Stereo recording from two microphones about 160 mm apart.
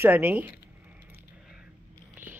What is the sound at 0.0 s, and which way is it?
Speech, 10° right (ahead or behind).